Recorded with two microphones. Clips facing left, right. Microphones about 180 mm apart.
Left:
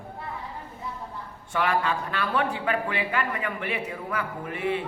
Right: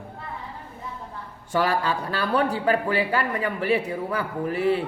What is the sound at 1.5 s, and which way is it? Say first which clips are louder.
Speech: right 2 dB; 35° right (ahead or behind).